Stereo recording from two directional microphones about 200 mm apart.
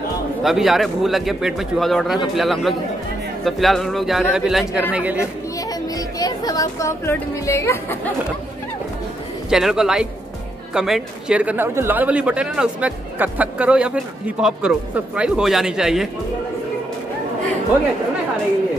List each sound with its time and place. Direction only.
0.4 s speech: centre (ahead or behind)
5.6 s speech: 20° left (ahead or behind)
9.5 s speech: 5° right (ahead or behind)